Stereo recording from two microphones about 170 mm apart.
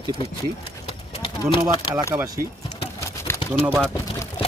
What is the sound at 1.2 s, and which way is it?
Speech, 30° left (ahead or behind).